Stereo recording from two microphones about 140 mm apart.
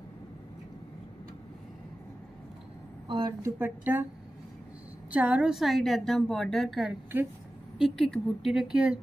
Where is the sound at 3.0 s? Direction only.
35° right (ahead or behind).